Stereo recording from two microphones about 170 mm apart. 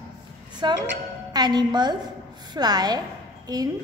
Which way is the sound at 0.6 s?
25° right (ahead or behind).